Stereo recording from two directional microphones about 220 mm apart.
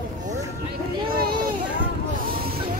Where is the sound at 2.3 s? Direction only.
40° right (ahead or behind).